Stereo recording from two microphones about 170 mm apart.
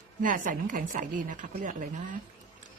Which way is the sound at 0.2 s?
50° right (ahead or behind).